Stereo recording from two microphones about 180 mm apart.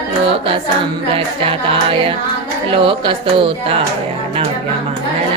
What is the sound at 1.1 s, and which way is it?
Music, 30° right (ahead or behind).